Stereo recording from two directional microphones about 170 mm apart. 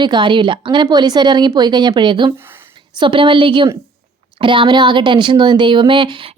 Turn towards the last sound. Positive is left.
turn(degrees=-30)  # may be behind; listen again after turning